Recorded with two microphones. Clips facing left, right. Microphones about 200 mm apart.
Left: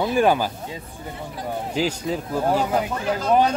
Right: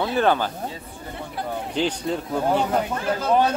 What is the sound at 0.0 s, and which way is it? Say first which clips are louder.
Speech: left 2 dB; 10° left (ahead or behind).